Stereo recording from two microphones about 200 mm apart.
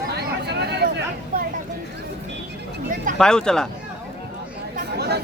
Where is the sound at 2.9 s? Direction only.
40° right (ahead or behind).